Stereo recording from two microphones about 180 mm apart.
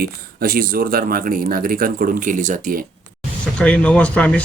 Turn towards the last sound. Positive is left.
turn(degrees=5)  # may be behind; listen again after turning